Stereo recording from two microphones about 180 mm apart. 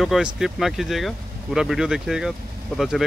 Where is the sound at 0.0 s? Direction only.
Centre (ahead or behind).